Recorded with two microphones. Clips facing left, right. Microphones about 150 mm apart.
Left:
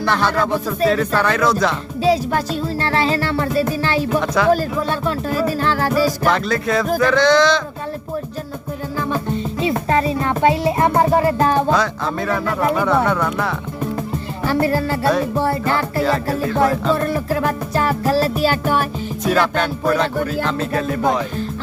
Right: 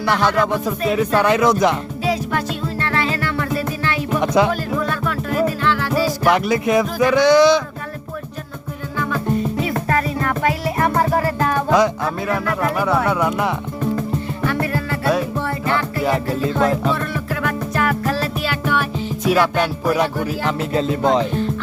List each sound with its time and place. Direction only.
0.0 s speech: 15° right (ahead or behind)
2.8 s music: 30° left (ahead or behind)
4.2 s music: 20° right (ahead or behind)
4.5 s music: 30° left (ahead or behind)
6.2 s speech: 15° right (ahead or behind)
9.0 s music: 30° left (ahead or behind)
12.7 s speech: 5° right (ahead or behind)
14.4 s music: 30° left (ahead or behind)
16.0 s music: 20° right (ahead or behind)
16.9 s music: 40° left (ahead or behind)
19.2 s speech: 10° right (ahead or behind)
20.4 s music: 15° right (ahead or behind)